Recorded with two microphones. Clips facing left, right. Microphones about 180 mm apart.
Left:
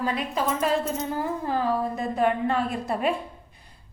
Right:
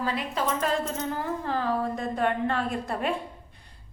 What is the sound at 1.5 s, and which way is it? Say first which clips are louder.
A woman's voice: left 1 dB; 10° left (ahead or behind).